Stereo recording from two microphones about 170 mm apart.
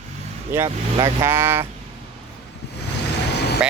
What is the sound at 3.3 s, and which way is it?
Vehicle, 75° left (ahead or behind).